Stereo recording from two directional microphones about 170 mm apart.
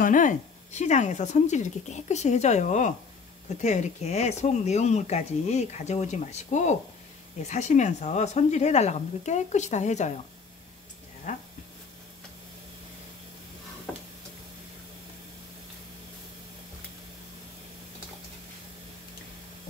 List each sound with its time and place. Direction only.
0.0 s speech: 50° left (ahead or behind)
11.3 s speech: 45° left (ahead or behind)